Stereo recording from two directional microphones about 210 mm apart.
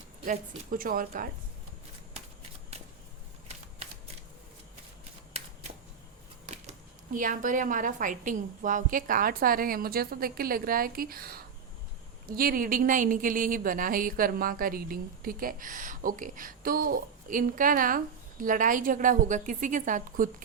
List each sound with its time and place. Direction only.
0.3 s a woman's voice: 40° right (ahead or behind)
6.4 s speech: 35° right (ahead or behind)